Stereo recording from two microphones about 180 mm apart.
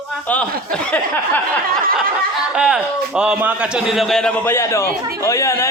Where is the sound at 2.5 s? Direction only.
5° right (ahead or behind).